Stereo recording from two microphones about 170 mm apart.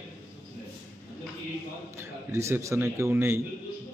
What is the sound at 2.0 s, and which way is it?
A man's voice, 15° right (ahead or behind).